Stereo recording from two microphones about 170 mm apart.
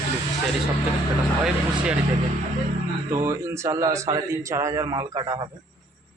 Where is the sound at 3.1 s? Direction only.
15° right (ahead or behind).